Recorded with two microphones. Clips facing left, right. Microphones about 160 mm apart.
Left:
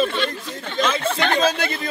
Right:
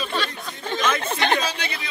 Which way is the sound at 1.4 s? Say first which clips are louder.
Left 8 dB; 50° left (ahead or behind).